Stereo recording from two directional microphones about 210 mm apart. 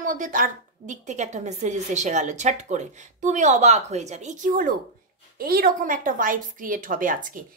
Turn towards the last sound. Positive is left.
turn(degrees=-40)  # may be behind; listen again after turning